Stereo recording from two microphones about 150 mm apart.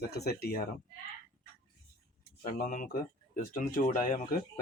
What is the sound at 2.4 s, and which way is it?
Speech, 70° left (ahead or behind).